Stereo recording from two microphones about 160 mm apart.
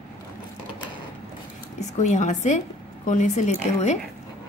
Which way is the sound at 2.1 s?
50° left (ahead or behind).